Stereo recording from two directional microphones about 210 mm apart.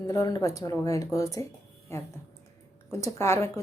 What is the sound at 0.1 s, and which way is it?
A woman's voice, 15° left (ahead or behind).